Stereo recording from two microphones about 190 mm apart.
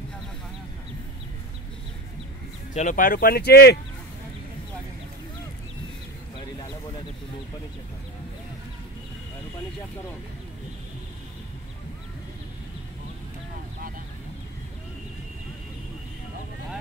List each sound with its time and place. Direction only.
2.7 s speech: 40° left (ahead or behind); by 3.8 s 60° left (ahead or behind)